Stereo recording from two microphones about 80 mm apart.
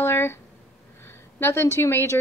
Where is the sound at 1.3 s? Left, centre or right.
Left.